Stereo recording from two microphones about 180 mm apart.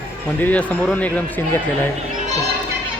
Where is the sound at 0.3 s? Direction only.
10° left (ahead or behind).